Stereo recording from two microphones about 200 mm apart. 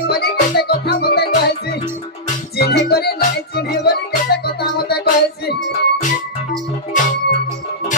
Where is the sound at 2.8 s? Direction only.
50° left (ahead or behind).